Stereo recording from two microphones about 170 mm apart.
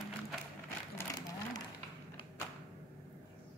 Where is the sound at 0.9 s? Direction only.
20° left (ahead or behind).